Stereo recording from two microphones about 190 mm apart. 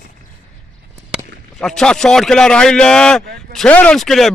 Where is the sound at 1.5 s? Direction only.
Centre (ahead or behind).